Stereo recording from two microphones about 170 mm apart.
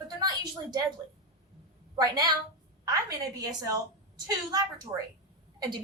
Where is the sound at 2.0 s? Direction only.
25° right (ahead or behind).